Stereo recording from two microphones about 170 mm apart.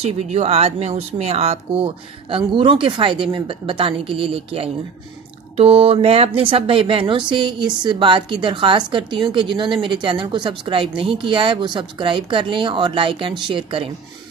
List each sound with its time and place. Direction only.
0.0 s speech: 40° right (ahead or behind)